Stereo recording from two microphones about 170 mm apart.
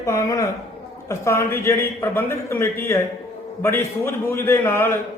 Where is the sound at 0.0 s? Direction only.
20° left (ahead or behind).